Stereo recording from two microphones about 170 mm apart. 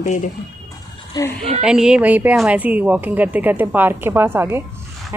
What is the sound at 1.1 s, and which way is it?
Speech, 20° left (ahead or behind).